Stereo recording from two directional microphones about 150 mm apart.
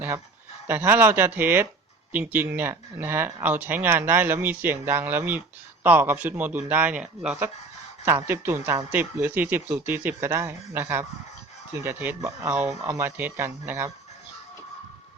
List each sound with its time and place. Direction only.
0.7 s speech: 15° right (ahead or behind)